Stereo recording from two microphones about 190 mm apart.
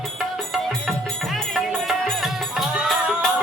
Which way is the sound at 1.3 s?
Centre (ahead or behind).